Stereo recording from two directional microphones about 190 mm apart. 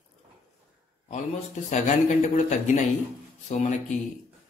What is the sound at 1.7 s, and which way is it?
Speech, 40° left (ahead or behind).